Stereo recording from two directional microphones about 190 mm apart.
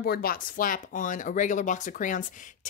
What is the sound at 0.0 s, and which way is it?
A woman's voice, 55° left (ahead or behind).